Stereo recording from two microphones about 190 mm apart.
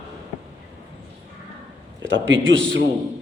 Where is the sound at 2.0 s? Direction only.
75° right (ahead or behind).